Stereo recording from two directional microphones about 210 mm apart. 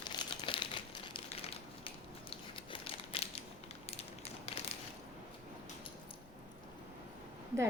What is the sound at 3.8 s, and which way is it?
Crushing, 30° left (ahead or behind).